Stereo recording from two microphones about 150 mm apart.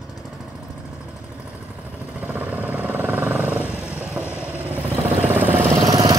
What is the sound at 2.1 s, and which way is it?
Vehicle, 10° right (ahead or behind).